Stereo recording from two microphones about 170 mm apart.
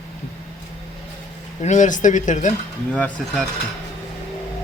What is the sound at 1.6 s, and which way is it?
Speech, 45° left (ahead or behind).